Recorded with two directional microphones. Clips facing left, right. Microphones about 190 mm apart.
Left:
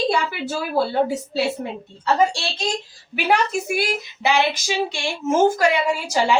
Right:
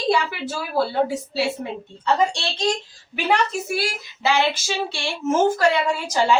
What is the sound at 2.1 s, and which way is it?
A woman's voice, 10° left (ahead or behind).